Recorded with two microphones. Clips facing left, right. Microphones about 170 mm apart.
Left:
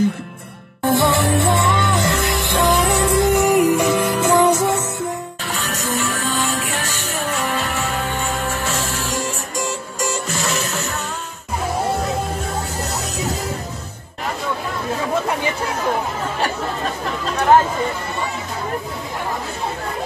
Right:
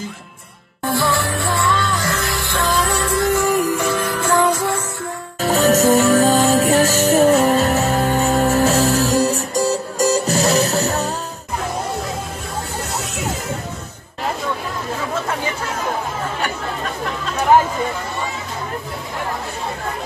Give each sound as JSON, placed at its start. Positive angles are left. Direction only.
{"t": 0.8, "sound": "music", "side_deg": 20}
{"t": 5.4, "sound": "music", "side_deg": -40}